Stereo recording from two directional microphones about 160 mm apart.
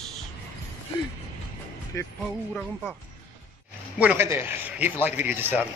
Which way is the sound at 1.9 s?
20° left (ahead or behind).